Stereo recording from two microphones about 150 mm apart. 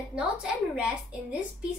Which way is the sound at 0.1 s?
5° right (ahead or behind).